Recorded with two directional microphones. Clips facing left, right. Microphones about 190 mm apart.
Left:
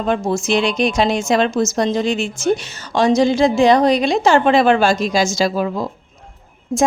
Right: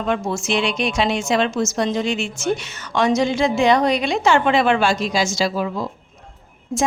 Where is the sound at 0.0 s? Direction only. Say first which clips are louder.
Left 4 dB; 35° left (ahead or behind).